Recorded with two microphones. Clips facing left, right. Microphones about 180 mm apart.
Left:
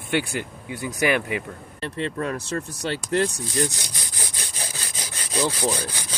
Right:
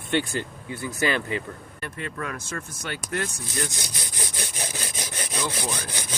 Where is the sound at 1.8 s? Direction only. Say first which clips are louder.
Left 6 dB; 30° left (ahead or behind).